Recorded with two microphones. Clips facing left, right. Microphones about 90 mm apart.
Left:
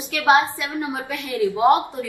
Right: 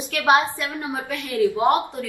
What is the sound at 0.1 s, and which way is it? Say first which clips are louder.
A woman's voice: left 1 dB; 15° left (ahead or behind).